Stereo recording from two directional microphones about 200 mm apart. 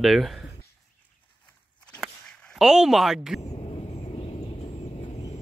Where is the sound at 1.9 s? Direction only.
5° left (ahead or behind).